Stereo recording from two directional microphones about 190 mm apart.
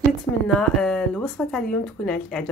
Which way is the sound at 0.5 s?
5° left (ahead or behind).